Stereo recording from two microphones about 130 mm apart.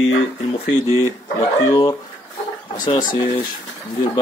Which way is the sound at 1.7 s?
30° left (ahead or behind).